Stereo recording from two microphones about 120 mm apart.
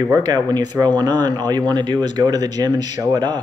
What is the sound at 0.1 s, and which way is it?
Speech, 35° right (ahead or behind).